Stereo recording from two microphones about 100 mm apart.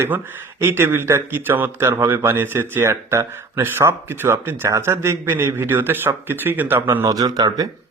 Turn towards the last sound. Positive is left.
turn(degrees=-40)  # may be behind; listen again after turning